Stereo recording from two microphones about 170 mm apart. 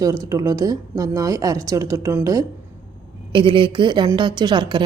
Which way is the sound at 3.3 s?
30° right (ahead or behind).